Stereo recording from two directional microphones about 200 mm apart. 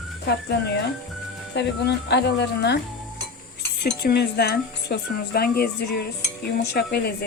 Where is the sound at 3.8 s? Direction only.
50° left (ahead or behind).